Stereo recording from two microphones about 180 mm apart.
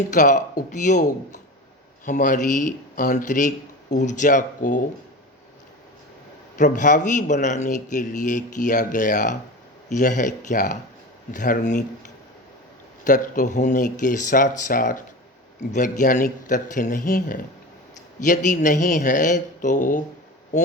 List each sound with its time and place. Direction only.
0.1 s speech: 45° left (ahead or behind)
6.6 s speech: 45° left (ahead or behind)
13.1 s speech: 45° left (ahead or behind)